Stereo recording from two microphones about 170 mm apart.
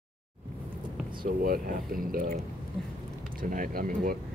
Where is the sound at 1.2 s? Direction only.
55° right (ahead or behind).